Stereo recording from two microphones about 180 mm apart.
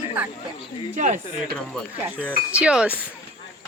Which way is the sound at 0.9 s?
45° right (ahead or behind).